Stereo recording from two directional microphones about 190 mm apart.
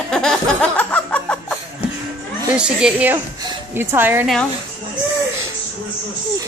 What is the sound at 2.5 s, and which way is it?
A woman's voice, 5° right (ahead or behind).